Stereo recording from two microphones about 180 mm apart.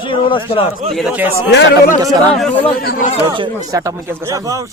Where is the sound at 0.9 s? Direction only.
5° right (ahead or behind).